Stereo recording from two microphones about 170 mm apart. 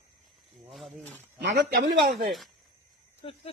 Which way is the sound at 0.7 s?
Centre (ahead or behind).